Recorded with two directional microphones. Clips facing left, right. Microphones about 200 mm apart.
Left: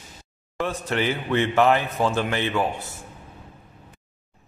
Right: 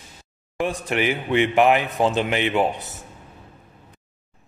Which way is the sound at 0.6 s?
15° right (ahead or behind).